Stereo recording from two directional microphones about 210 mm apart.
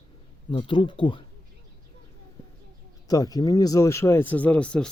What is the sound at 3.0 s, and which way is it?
Speech, 15° left (ahead or behind).